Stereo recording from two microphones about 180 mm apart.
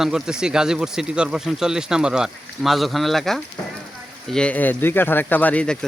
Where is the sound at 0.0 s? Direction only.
5° right (ahead or behind).